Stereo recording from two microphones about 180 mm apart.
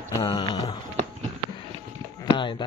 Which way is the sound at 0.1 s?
20° left (ahead or behind).